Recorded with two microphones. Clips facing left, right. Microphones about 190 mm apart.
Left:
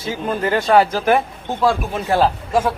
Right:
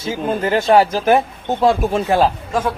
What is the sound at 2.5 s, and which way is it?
Speech, 10° left (ahead or behind).